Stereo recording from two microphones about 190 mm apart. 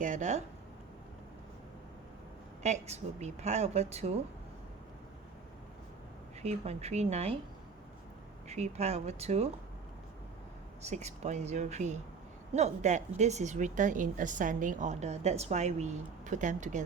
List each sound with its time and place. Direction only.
0.0 s a woman's voice: 40° right (ahead or behind)
2.6 s a woman's voice: 35° right (ahead or behind)
6.4 s a woman's voice: 35° right (ahead or behind)
8.4 s a woman's voice: 35° right (ahead or behind)
10.8 s a woman's voice: 35° right (ahead or behind)